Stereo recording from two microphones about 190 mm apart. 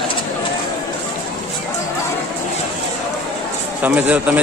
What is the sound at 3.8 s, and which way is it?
Speech, 10° right (ahead or behind).